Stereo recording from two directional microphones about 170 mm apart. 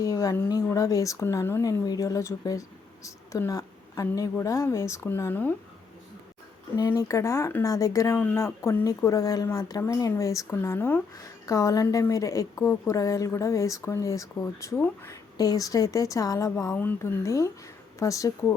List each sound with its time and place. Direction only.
0.0 s speech: 20° left (ahead or behind)
6.7 s a woman's voice: 20° left (ahead or behind)